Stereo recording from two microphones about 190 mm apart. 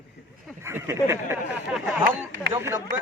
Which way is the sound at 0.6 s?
15° right (ahead or behind).